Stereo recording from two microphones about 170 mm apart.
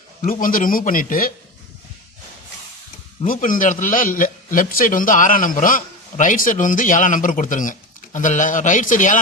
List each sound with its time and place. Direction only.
0.3 s a man's voice: 55° left (ahead or behind)
3.2 s a man's voice: 50° left (ahead or behind)